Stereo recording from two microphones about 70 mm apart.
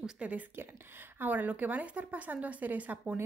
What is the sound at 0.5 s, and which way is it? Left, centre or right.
Speech, right.